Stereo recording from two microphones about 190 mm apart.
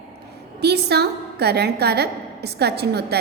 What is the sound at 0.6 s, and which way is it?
A woman's voice, 60° right (ahead or behind).